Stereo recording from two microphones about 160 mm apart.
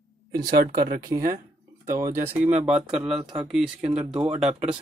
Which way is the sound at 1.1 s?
60° right (ahead or behind).